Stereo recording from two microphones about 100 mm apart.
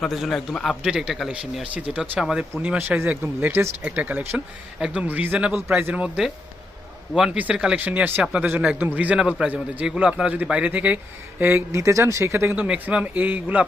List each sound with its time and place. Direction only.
0.0 s a man's voice: centre (ahead or behind); by 12.6 s 25° right (ahead or behind)
12.6 s a man's voice: 10° right (ahead or behind)